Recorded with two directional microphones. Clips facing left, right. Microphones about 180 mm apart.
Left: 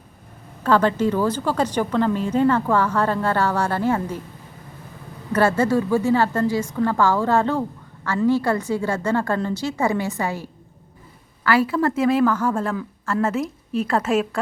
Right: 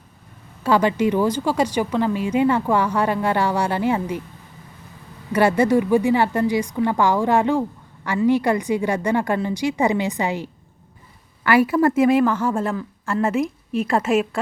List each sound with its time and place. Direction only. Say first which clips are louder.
0.6 s a woman's voice: even; 10° right (ahead or behind)
5.3 s a woman's voice: right 2 dB; 15° right (ahead or behind)